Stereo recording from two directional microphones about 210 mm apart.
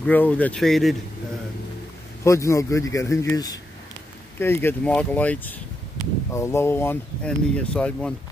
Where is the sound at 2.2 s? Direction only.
15° left (ahead or behind).